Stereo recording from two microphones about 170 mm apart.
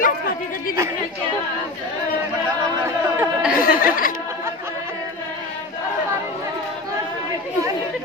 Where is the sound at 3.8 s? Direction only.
55° left (ahead or behind).